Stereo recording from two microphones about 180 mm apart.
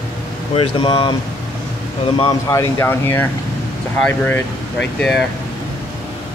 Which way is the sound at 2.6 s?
15° left (ahead or behind).